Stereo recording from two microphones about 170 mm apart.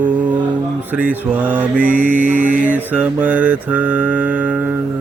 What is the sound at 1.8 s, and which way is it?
Mantra, 55° right (ahead or behind).